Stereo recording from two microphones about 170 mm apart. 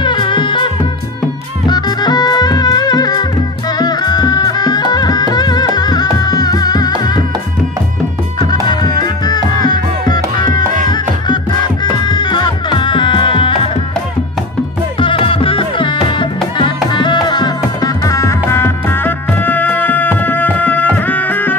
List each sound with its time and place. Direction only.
0.0 s music: 30° left (ahead or behind)
1.7 s music: 25° left (ahead or behind)
8.6 s music: 25° left (ahead or behind)
11.8 s music: 25° left (ahead or behind)
15.0 s music: 30° left (ahead or behind); by 21.5 s 10° left (ahead or behind)